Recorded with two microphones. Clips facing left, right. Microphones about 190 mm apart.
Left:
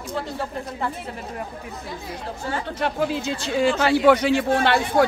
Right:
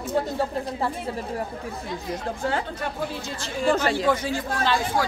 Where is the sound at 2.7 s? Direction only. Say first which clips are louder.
Left 6 dB; 85° left.